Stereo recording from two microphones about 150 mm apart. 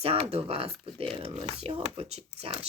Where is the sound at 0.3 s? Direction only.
45° right (ahead or behind).